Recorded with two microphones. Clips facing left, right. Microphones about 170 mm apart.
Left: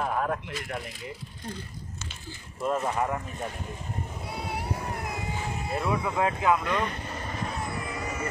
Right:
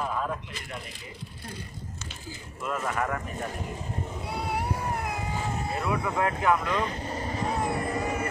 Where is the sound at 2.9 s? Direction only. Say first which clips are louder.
Left 1 dB; 20° left (ahead or behind).